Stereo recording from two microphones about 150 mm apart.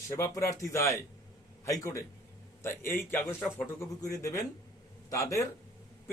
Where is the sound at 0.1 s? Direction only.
20° left (ahead or behind).